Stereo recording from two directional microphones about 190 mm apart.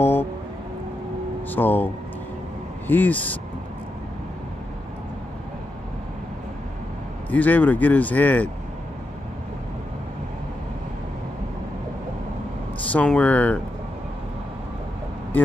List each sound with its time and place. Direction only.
0.0 s a sound: 10° left (ahead or behind)
1.5 s speech: 10° left (ahead or behind)
2.9 s speech: 10° left (ahead or behind)
7.2 s speech: 10° left (ahead or behind)
12.9 s speech: 5° left (ahead or behind)